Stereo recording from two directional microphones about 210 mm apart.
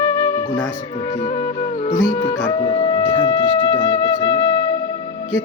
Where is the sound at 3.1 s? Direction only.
20° left (ahead or behind).